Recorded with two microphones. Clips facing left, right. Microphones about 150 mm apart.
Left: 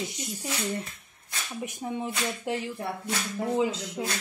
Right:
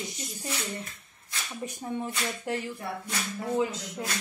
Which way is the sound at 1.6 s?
15° left (ahead or behind).